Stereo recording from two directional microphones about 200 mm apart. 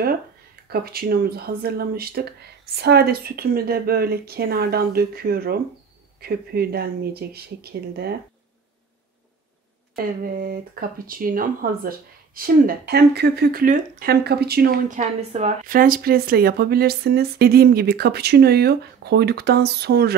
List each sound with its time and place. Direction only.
0.7 s speech: 50° right (ahead or behind)
9.9 s speech: 45° right (ahead or behind)
15.0 s speech: 35° right (ahead or behind); by 20.2 s 50° right (ahead or behind)